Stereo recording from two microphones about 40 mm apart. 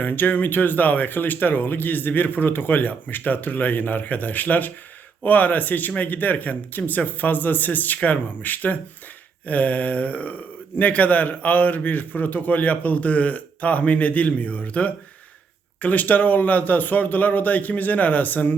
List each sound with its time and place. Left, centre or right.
0.0 s a man's voice: left